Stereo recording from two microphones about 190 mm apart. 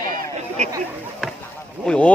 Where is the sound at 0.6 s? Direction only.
35° right (ahead or behind).